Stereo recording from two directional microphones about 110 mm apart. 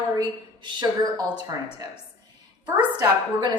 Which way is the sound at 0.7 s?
45° right (ahead or behind).